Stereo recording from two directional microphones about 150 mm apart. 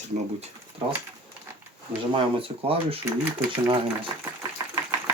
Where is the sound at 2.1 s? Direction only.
35° right (ahead or behind).